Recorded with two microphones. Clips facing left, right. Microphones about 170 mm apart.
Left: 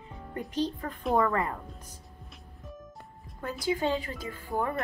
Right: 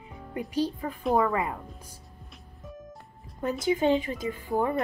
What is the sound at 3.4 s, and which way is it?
A woman's voice, 20° right (ahead or behind).